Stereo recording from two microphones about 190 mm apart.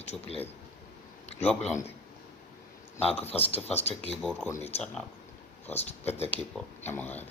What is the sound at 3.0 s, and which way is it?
Speech, 35° left (ahead or behind).